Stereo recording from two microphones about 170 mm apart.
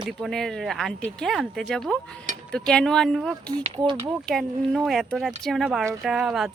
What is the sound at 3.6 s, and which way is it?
Speech, 30° right (ahead or behind).